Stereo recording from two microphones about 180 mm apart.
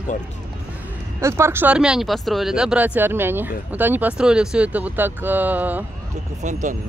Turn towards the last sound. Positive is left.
turn(degrees=-40)  # may be behind; listen again after turning